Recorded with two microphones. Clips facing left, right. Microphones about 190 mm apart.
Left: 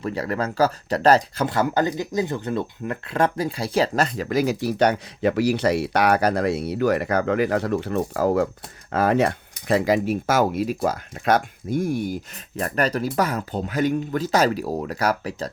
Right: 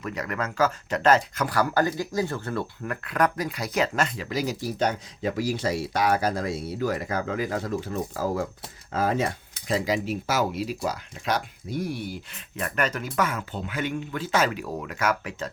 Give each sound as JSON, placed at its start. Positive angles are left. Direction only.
{"t": 0.0, "sound": "speech", "side_deg": 30}
{"t": 1.5, "sound": "speech", "side_deg": 20}
{"t": 4.3, "sound": "speech", "side_deg": 60}